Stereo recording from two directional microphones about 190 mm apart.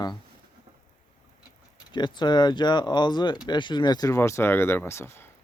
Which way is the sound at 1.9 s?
25° left (ahead or behind).